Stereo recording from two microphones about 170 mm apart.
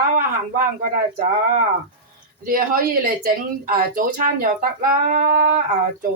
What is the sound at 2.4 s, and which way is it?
Speech, 55° right (ahead or behind).